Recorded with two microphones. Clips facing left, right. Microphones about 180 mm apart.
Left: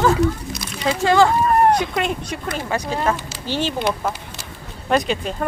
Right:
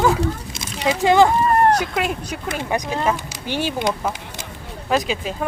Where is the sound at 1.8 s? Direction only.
5° right (ahead or behind).